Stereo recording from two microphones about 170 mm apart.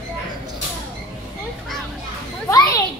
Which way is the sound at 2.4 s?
20° left (ahead or behind).